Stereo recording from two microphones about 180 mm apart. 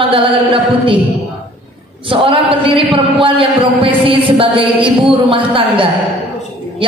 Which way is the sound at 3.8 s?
30° right (ahead or behind).